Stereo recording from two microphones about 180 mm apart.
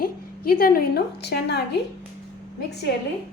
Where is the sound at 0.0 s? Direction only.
55° left (ahead or behind).